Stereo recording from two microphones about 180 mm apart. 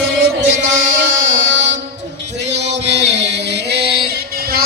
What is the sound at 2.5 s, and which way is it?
Music, 70° right (ahead or behind).